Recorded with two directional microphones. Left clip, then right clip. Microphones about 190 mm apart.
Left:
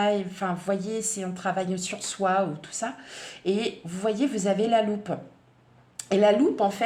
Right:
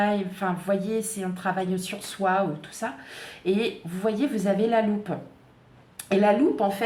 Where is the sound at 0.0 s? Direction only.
35° left (ahead or behind).